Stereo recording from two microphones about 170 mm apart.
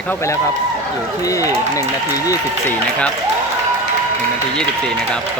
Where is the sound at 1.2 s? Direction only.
20° left (ahead or behind).